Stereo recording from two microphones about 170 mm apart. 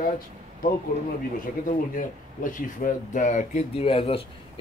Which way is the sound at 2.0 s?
50° left (ahead or behind).